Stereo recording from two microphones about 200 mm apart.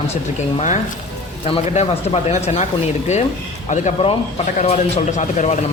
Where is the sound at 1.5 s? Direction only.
30° left (ahead or behind).